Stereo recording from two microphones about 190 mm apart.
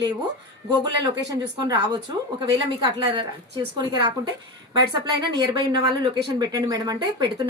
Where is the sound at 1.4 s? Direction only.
25° right (ahead or behind).